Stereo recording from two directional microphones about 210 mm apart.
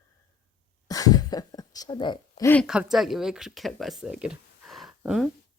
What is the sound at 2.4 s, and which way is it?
Speech, 10° left (ahead or behind).